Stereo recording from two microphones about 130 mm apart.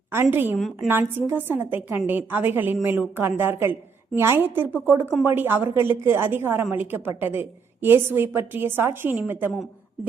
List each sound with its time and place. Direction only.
0.1 s a woman's voice: 15° right (ahead or behind)
0.5 s a woman's voice: centre (ahead or behind)
1.3 s a woman's voice: 15° right (ahead or behind)